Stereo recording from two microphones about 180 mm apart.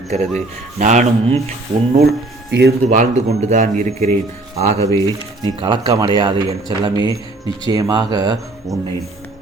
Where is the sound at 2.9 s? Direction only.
35° right (ahead or behind).